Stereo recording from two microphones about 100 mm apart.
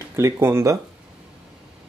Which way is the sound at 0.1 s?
25° right (ahead or behind).